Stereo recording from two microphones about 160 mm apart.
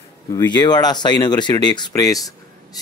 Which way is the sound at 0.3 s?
25° left (ahead or behind).